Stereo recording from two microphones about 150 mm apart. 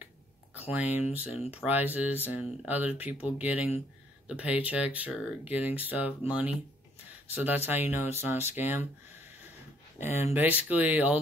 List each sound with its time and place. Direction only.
0.7 s speech: 10° right (ahead or behind)
1.3 s speech: 45° left (ahead or behind)
1.6 s speech: 10° right (ahead or behind)
10.0 s speech: 15° right (ahead or behind)